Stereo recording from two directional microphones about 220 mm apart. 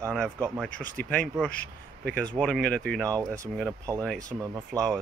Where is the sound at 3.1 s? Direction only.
15° right (ahead or behind).